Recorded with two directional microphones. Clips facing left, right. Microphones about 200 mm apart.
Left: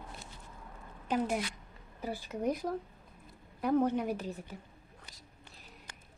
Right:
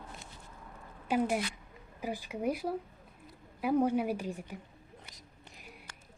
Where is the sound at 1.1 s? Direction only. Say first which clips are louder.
Right 2 dB; 10° right (ahead or behind).